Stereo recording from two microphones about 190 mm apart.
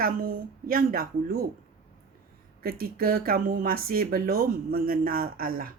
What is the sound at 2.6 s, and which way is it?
Speech, 50° right (ahead or behind).